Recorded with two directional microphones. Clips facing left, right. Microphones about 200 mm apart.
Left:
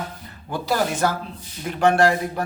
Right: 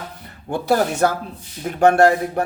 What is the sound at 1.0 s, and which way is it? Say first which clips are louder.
Speech: right 4 dB; 50° right (ahead or behind).